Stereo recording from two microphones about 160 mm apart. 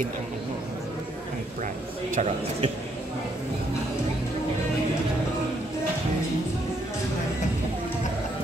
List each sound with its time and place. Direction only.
2.1 s speech: 40° right (ahead or behind)